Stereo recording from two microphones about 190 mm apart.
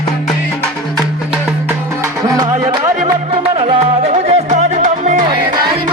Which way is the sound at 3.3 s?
30° right (ahead or behind).